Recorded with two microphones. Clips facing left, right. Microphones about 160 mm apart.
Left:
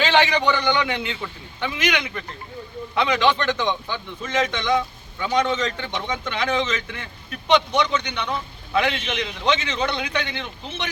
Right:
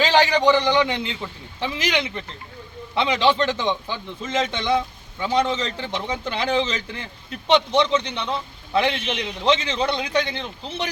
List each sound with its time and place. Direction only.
0.0 s a man's voice: 35° right (ahead or behind)